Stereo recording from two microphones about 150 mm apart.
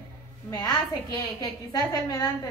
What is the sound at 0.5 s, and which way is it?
A woman's voice, 25° left (ahead or behind).